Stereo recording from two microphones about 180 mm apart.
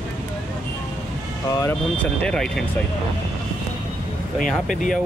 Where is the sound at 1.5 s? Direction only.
15° left (ahead or behind).